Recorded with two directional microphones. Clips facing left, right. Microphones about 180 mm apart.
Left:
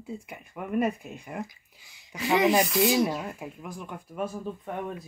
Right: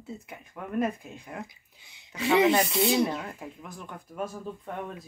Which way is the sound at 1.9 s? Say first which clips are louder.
Right 2 dB; 25° right (ahead or behind).